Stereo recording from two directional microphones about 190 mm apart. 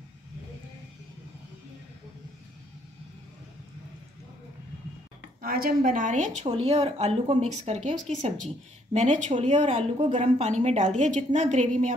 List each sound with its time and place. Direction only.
5.4 s a woman's voice: 50° right (ahead or behind)